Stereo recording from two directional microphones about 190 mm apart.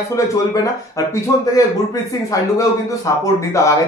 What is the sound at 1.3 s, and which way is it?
Speech, 15° left (ahead or behind).